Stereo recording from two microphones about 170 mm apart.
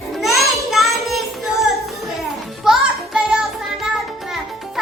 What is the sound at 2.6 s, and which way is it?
Music, 5° right (ahead or behind).